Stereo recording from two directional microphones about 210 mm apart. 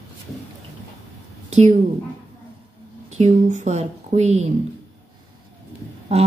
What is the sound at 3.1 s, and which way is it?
A woman's voice, 35° right (ahead or behind).